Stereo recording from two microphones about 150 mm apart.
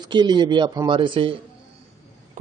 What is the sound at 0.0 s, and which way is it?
A man's voice, 30° right (ahead or behind).